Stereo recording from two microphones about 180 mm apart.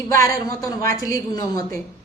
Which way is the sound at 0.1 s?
20° left (ahead or behind).